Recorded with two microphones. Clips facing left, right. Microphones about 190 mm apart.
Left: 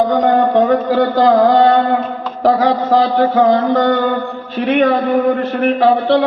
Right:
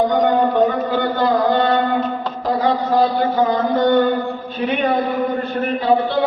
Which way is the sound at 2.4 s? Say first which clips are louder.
Left 6 dB; 85° left.